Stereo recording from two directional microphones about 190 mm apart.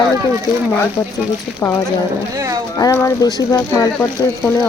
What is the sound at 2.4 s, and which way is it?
Speech, 20° right (ahead or behind).